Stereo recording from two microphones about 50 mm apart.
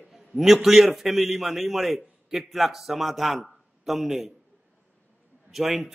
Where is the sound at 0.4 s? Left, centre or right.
Centre.